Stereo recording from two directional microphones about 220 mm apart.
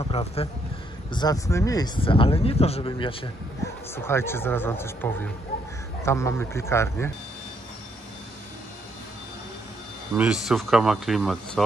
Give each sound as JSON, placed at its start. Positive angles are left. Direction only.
{"t": 0.0, "sound": "speech", "side_deg": 25}
{"t": 1.1, "sound": "speech", "side_deg": 15}
{"t": 3.9, "sound": "speech", "side_deg": 10}
{"t": 10.1, "sound": "speech", "side_deg": -5}